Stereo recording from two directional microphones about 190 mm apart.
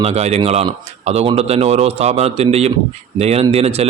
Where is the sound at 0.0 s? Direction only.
35° right (ahead or behind).